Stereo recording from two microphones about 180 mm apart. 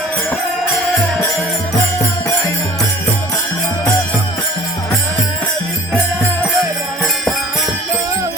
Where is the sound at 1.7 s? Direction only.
15° left (ahead or behind).